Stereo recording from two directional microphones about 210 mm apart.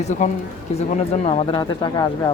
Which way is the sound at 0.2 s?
35° left (ahead or behind).